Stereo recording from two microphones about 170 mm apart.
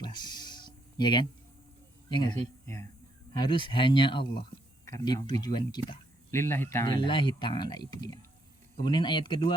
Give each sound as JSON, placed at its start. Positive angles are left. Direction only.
{"t": 0.0, "sound": "a sound", "side_deg": 25}
{"t": 2.0, "sound": "speech", "side_deg": 25}
{"t": 6.3, "sound": "speech", "side_deg": 15}
{"t": 6.8, "sound": "speech", "side_deg": 25}